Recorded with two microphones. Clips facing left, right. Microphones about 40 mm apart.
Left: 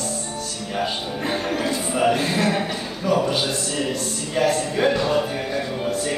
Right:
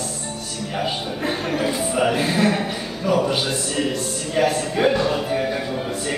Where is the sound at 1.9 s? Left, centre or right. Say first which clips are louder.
Left 2 dB; centre.